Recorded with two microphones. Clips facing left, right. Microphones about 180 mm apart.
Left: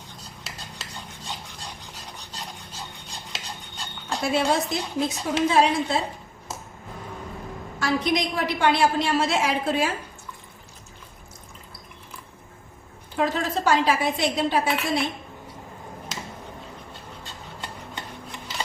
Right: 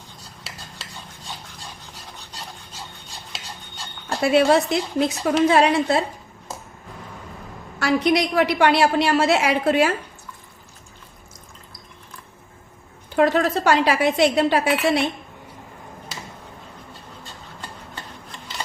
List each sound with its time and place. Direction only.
4.2 s a woman's voice: 70° right (ahead or behind)
7.8 s a woman's voice: 70° right (ahead or behind)
13.1 s a woman's voice: 70° right (ahead or behind)